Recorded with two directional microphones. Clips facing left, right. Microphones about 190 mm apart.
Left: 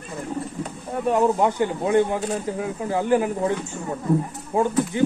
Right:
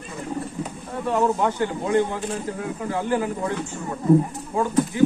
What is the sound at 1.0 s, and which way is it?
Speech, 15° left (ahead or behind).